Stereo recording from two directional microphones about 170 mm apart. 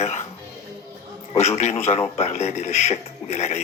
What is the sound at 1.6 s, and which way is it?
Speech, 40° left (ahead or behind).